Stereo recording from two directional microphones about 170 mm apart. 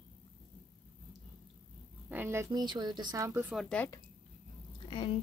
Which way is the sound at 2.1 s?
15° right (ahead or behind).